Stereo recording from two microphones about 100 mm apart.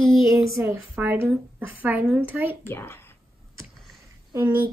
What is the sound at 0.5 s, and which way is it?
A woman's voice, 30° right (ahead or behind).